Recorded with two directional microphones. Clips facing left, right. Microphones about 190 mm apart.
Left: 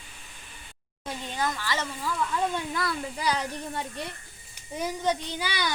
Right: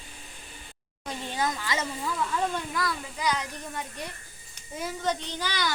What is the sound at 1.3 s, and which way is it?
Speech, 10° right (ahead or behind).